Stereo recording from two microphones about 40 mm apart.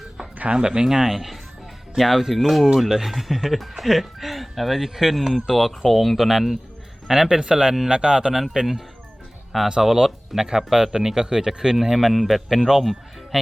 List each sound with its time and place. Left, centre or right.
0.5 s speech: centre
7.3 s speech: right
9.6 s speech: centre